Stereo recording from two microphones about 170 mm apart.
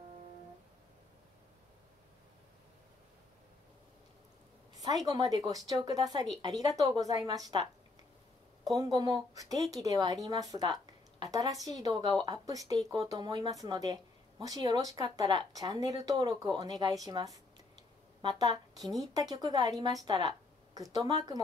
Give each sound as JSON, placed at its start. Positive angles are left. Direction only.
{"t": 5.0, "sound": "a woman's voice", "side_deg": -20}
{"t": 8.6, "sound": "a woman's voice", "side_deg": -20}